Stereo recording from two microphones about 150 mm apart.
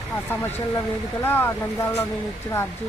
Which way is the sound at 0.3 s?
15° left (ahead or behind).